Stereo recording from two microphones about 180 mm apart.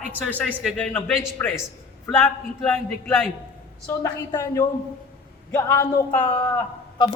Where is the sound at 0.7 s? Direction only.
10° left (ahead or behind).